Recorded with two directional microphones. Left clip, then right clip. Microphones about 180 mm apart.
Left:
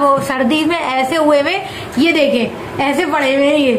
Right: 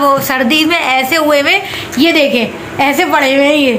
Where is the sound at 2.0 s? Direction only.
20° right (ahead or behind).